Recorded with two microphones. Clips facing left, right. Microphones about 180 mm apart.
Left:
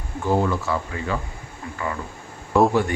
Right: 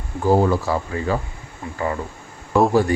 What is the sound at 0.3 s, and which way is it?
Speech, 35° right (ahead or behind).